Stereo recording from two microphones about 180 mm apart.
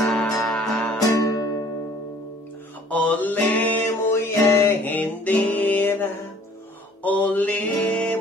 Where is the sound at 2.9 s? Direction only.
10° left (ahead or behind).